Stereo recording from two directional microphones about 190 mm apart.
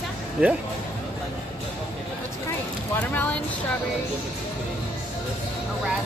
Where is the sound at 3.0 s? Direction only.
10° left (ahead or behind).